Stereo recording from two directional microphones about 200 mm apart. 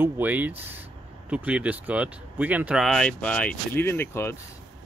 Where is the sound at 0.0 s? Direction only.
10° right (ahead or behind).